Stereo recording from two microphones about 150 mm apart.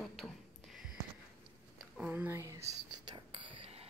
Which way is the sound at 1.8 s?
10° right (ahead or behind).